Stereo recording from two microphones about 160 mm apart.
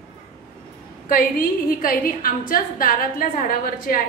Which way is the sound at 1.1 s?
60° left (ahead or behind).